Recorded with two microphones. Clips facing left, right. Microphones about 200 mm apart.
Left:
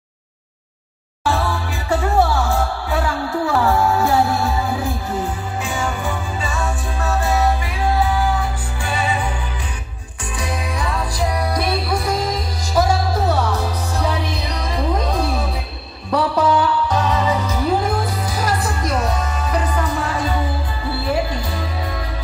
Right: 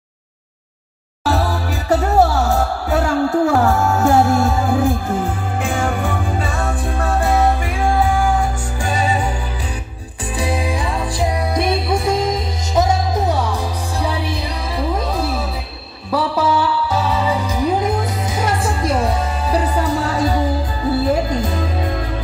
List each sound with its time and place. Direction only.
1.2 s music: 40° right (ahead or behind)
10.3 s music: 30° right (ahead or behind); by 22.0 s 50° right (ahead or behind)